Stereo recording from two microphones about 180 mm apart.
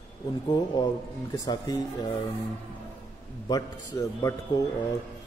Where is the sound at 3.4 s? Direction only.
20° left (ahead or behind).